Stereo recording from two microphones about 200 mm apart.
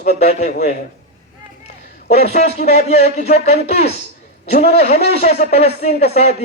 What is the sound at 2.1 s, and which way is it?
A man's voice, 35° left (ahead or behind).